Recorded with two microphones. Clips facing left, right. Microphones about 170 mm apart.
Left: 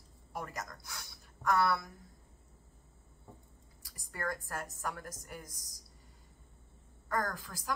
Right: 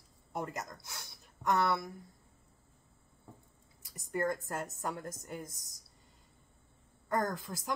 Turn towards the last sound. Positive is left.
turn(degrees=-20)  # may be behind; listen again after turning